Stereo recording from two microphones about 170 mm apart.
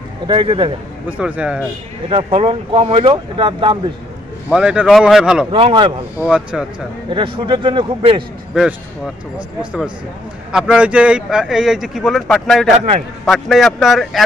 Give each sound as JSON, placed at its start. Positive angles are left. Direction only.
{"t": 0.3, "sound": "speech", "side_deg": -30}
{"t": 1.0, "sound": "a man's voice", "side_deg": -10}
{"t": 2.0, "sound": "speech", "side_deg": -30}
{"t": 4.5, "sound": "speech", "side_deg": -5}
{"t": 5.5, "sound": "speech", "side_deg": -30}
{"t": 6.2, "sound": "speech", "side_deg": -5}
{"t": 7.1, "sound": "speech", "side_deg": -30}
{"t": 8.5, "sound": "speech", "side_deg": -5}
{"t": 10.5, "sound": "speech", "side_deg": -5}